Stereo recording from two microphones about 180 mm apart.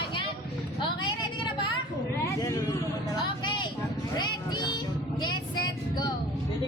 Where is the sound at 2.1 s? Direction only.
15° left (ahead or behind).